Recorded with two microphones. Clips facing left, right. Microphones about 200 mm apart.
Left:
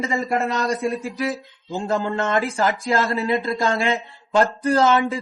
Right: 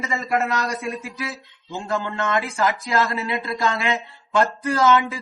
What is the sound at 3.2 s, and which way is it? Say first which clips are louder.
A man's voice: left 3 dB; 45° left (ahead or behind).